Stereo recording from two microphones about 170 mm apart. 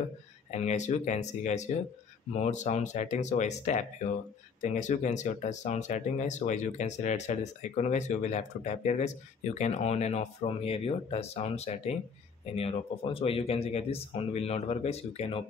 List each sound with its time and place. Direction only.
0.5 s speech: 40° left (ahead or behind)